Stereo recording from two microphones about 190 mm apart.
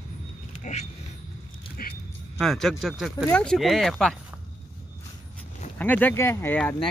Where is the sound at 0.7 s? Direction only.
40° left (ahead or behind).